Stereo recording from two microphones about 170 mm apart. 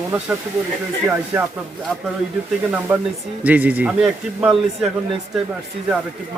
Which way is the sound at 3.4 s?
10° right (ahead or behind).